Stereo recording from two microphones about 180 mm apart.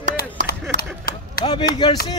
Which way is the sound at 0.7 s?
55° left (ahead or behind).